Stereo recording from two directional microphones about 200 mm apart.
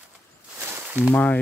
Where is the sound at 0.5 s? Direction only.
10° right (ahead or behind).